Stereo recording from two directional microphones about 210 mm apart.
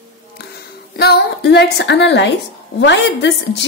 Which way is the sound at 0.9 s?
50° left (ahead or behind).